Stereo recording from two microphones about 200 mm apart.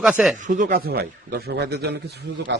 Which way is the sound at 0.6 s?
50° right (ahead or behind).